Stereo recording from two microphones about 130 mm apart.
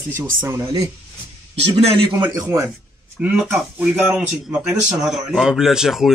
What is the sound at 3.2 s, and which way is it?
Speech, 15° right (ahead or behind).